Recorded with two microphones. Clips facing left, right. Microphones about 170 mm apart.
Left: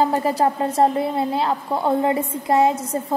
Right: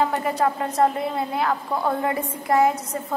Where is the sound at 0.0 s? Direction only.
35° left (ahead or behind).